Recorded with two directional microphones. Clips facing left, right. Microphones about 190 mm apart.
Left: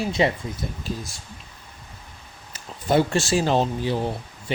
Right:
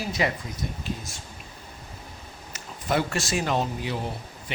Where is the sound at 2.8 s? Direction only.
30° left (ahead or behind).